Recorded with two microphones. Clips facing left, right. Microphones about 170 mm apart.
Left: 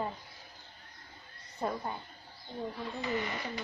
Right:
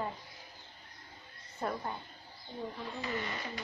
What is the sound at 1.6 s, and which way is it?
Speech, 15° left (ahead or behind).